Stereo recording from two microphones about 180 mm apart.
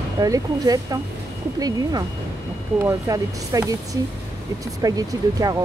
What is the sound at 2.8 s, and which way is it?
Speech, 20° right (ahead or behind).